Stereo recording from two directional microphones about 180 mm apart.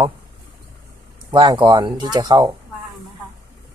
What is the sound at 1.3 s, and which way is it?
Speech, 25° right (ahead or behind).